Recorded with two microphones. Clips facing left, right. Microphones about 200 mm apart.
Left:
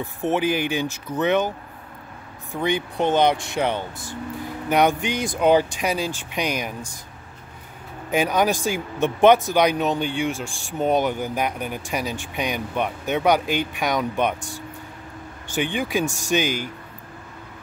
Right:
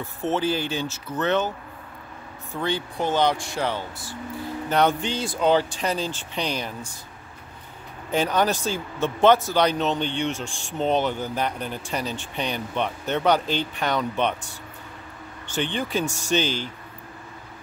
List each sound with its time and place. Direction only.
0.0 s speech: 15° left (ahead or behind)
2.5 s speech: 15° left (ahead or behind)
8.1 s speech: 10° left (ahead or behind)